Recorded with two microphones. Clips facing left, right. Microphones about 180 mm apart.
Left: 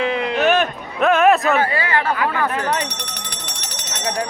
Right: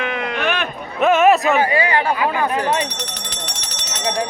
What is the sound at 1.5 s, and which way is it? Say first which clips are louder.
Speech: right 2 dB; 15° right (ahead or behind).